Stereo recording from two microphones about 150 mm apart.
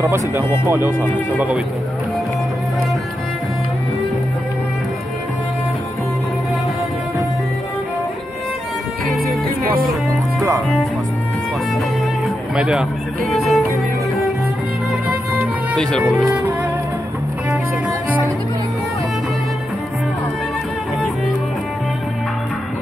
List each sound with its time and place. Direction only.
0.0 s speech: 15° right (ahead or behind)
12.5 s music: 5° right (ahead or behind)
15.7 s speech: 5° left (ahead or behind)
16.0 s speech: 5° right (ahead or behind)